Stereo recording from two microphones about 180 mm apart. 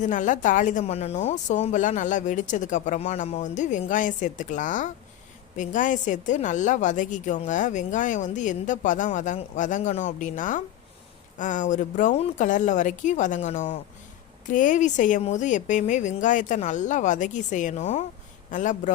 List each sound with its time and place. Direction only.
0.0 s a woman's voice: 45° left (ahead or behind)